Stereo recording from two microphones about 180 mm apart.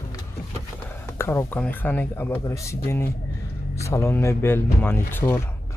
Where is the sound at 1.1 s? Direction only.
15° left (ahead or behind).